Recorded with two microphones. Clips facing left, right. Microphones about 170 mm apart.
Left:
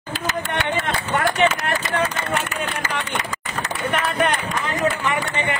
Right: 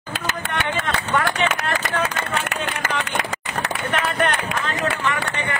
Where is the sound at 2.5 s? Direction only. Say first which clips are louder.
Even; 65° right (ahead or behind).